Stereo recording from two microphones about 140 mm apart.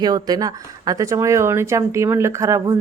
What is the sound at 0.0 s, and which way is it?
Speech, 30° right (ahead or behind).